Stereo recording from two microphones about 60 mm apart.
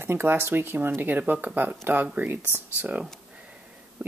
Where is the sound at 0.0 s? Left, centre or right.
Right.